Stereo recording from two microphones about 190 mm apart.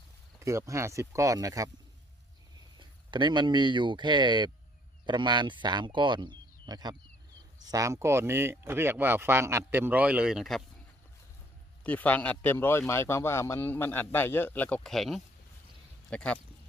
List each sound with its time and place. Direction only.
0.3 s speech: 15° right (ahead or behind)
2.7 s speech: 25° right (ahead or behind); by 10.6 s centre (ahead or behind)
11.8 s speech: 10° left (ahead or behind)